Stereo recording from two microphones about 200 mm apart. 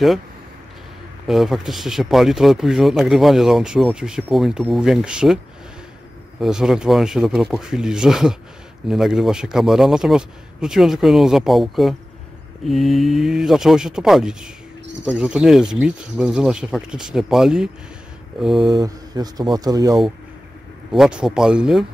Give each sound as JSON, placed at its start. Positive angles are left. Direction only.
{"t": 1.2, "sound": "speech", "side_deg": 0}
{"t": 6.4, "sound": "speech", "side_deg": -5}
{"t": 18.7, "sound": "speech", "side_deg": -15}
{"t": 20.9, "sound": "speech", "side_deg": -5}